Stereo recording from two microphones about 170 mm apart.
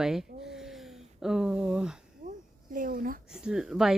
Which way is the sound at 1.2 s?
5° right (ahead or behind).